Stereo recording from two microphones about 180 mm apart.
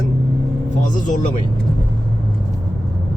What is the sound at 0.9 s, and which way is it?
Speech, 45° left (ahead or behind).